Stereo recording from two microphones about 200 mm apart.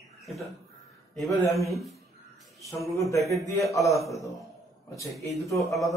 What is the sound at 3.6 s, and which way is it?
Speech, 15° left (ahead or behind).